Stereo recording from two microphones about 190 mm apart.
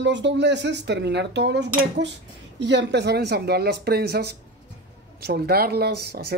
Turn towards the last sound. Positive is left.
turn(degrees=-55)  # may be behind; listen again after turning